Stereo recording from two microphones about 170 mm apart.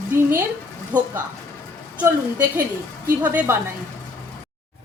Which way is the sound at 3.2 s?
10° right (ahead or behind).